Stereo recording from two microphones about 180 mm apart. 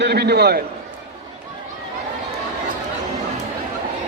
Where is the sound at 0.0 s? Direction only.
65° right (ahead or behind).